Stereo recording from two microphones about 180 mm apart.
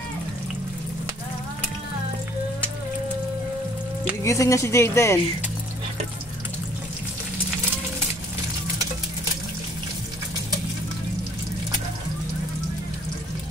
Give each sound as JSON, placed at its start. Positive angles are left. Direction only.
{"t": 4.2, "sound": "speech", "side_deg": 15}